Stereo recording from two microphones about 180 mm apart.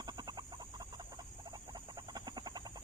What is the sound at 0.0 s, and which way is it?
Chicken, 20° right (ahead or behind).